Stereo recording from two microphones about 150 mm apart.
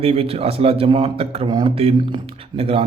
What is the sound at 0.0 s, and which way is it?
Speech, 40° right (ahead or behind).